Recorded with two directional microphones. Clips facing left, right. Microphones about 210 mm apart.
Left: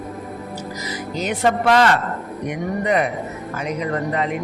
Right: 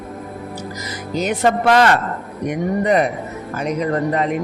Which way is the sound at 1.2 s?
45° right (ahead or behind).